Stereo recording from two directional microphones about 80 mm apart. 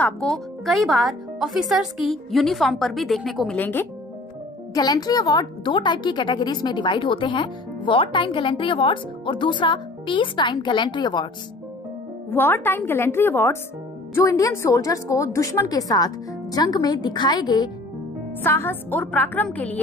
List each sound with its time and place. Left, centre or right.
0.2 s speech: centre
3.5 s a woman's voice: left
4.7 s a woman's voice: left
12.3 s a woman's voice: left
14.1 s a woman's voice: left
18.4 s a woman's voice: left